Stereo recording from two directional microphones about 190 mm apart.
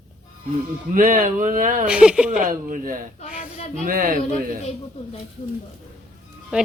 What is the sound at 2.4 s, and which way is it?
Speech, 45° right (ahead or behind).